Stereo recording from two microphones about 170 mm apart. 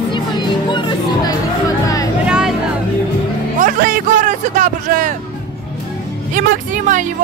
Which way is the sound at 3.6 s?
50° right (ahead or behind).